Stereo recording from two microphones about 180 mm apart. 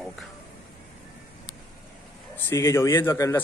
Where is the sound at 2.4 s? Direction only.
15° left (ahead or behind).